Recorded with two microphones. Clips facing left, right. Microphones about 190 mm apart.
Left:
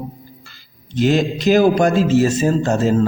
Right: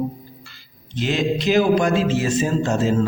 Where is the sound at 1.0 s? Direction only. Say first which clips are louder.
Left 5 dB; 45° left (ahead or behind).